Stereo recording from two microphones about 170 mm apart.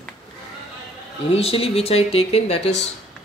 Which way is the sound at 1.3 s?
35° left (ahead or behind).